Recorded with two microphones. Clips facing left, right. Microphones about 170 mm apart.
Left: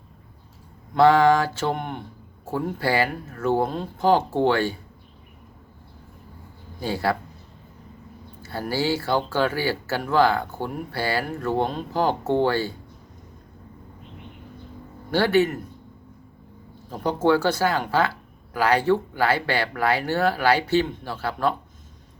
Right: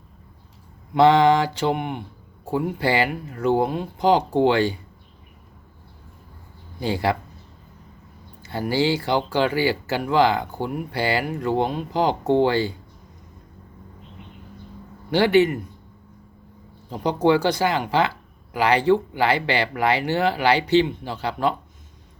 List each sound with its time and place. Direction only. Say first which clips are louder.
0.9 s speech: right 1 dB; 20° right (ahead or behind)
6.7 s speech: right 2 dB; 15° right (ahead or behind)
8.4 s speech: right 4 dB; 15° right (ahead or behind)
15.4 s speech: right 3 dB; 10° right (ahead or behind)
16.9 s speech: right 2 dB; 15° right (ahead or behind)